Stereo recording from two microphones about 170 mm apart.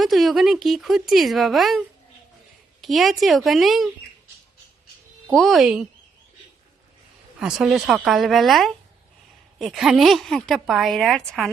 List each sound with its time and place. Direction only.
0.0 s speech: centre (ahead or behind)
2.8 s speech: centre (ahead or behind)
5.3 s speech: centre (ahead or behind)
7.3 s speech: 5° right (ahead or behind)